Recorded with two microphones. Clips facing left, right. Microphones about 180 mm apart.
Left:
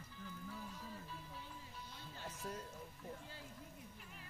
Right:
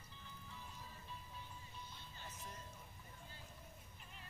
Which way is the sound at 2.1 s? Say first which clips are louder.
Left 8 dB; 90° left.